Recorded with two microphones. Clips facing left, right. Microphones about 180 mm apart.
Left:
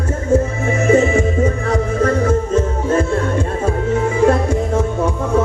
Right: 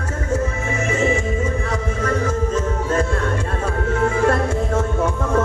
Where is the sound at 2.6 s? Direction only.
25° left (ahead or behind).